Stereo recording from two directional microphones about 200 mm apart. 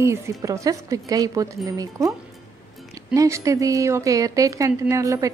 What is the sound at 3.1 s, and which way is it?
Speech, 15° right (ahead or behind).